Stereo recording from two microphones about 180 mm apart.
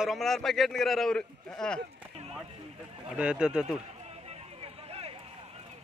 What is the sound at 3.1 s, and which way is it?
Speech, 5° right (ahead or behind).